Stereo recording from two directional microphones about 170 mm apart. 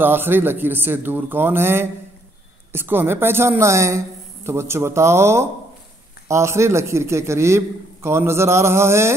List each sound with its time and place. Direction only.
0.0 s a man's voice: 10° right (ahead or behind)